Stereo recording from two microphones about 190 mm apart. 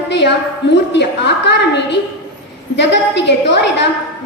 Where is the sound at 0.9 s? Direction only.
65° left (ahead or behind).